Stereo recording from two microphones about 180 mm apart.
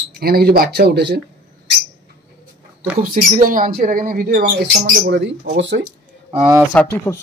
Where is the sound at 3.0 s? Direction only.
50° right (ahead or behind).